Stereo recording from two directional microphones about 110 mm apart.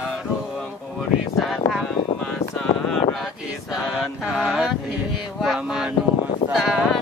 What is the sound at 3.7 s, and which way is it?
Mantra, centre (ahead or behind).